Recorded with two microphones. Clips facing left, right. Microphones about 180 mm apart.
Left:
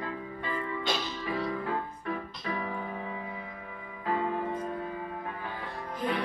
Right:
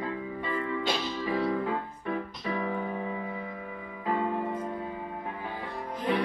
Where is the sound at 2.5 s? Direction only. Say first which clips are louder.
Right 4 dB; 20° right (ahead or behind).